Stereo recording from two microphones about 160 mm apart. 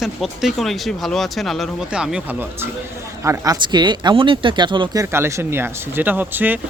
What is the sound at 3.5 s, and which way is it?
Speech, 30° right (ahead or behind).